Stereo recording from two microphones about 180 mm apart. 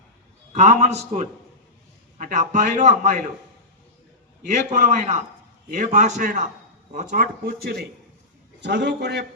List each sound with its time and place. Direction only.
0.5 s a man's voice: 40° right (ahead or behind)
4.7 s a man's voice: 40° right (ahead or behind); by 7.9 s 60° right (ahead or behind)
8.6 s a man's voice: 70° right (ahead or behind)